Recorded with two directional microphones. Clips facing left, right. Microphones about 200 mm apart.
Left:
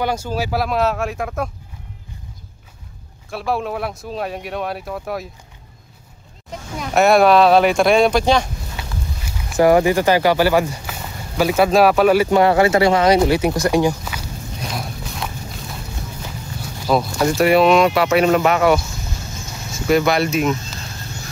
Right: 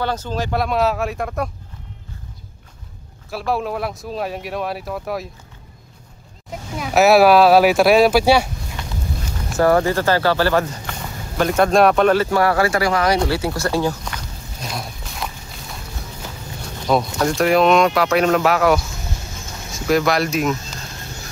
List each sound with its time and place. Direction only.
0.0 s speech: 10° left (ahead or behind)
3.3 s speech: centre (ahead or behind)
6.5 s speech: 5° right (ahead or behind)
8.8 s a sound: 5° left (ahead or behind)
9.6 s speech: 15° left (ahead or behind)
12.3 s speech: 20° left (ahead or behind)
14.0 s walk: 5° left (ahead or behind)
16.8 s speech: 5° left (ahead or behind)